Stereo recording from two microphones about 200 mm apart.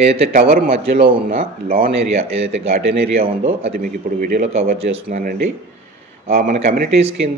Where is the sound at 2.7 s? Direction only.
50° right (ahead or behind).